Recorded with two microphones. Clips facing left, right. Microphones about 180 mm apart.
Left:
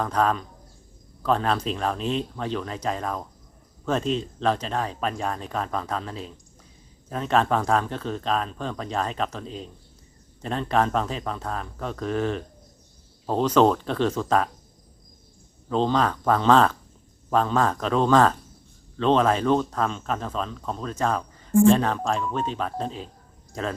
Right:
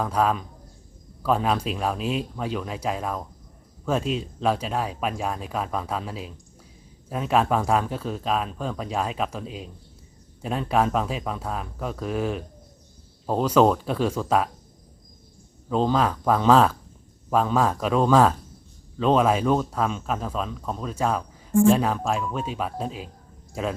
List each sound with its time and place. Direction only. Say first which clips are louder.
0.0 s speech: even; 5° right (ahead or behind)
15.7 s speech: even; 5° right (ahead or behind)